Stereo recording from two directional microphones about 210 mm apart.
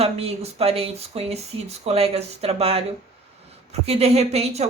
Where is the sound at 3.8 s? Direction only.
30° right (ahead or behind).